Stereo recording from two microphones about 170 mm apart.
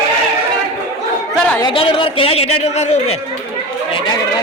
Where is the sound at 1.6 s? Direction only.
30° left (ahead or behind).